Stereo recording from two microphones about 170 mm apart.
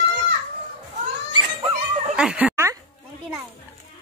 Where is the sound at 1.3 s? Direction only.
25° right (ahead or behind).